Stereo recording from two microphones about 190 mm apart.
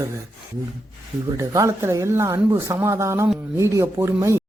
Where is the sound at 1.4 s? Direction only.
15° right (ahead or behind).